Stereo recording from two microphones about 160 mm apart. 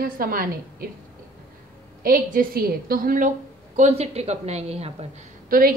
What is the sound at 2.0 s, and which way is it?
A woman's voice, 65° right (ahead or behind).